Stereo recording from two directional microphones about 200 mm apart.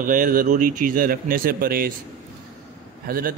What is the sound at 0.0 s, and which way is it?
A man's voice, 40° right (ahead or behind).